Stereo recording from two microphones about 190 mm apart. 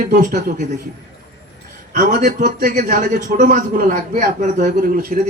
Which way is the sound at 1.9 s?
40° right (ahead or behind).